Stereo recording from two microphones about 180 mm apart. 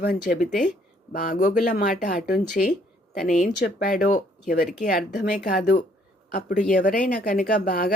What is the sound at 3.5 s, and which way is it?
Speech, 55° left (ahead or behind).